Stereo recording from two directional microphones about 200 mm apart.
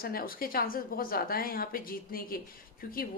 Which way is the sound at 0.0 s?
45° left (ahead or behind).